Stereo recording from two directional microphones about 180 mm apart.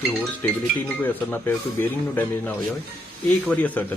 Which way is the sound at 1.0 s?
10° left (ahead or behind).